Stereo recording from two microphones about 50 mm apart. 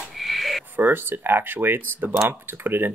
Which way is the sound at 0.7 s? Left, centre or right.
Right.